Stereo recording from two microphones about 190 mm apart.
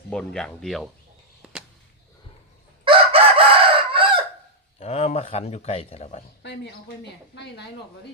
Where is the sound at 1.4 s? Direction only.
5° right (ahead or behind).